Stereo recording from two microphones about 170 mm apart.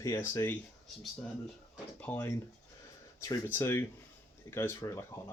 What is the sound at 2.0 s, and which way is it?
Speech, 10° left (ahead or behind).